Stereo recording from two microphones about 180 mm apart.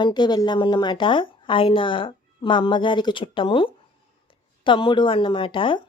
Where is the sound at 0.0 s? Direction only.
25° left (ahead or behind).